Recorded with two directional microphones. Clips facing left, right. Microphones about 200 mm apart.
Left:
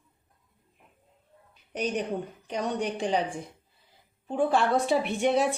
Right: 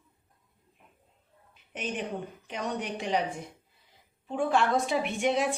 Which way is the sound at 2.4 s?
35° left (ahead or behind).